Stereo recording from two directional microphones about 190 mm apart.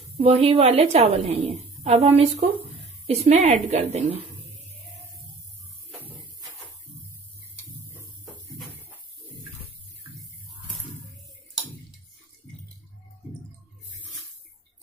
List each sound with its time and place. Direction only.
0.2 s a woman's voice: 30° right (ahead or behind)